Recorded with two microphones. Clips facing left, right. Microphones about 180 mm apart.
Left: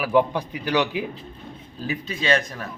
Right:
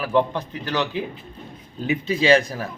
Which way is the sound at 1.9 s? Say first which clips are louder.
Right 6 dB; 30° right (ahead or behind).